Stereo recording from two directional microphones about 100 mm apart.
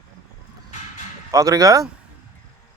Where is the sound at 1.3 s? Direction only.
35° right (ahead or behind).